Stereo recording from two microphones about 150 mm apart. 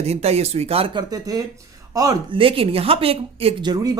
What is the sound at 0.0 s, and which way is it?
Speech, 45° right (ahead or behind).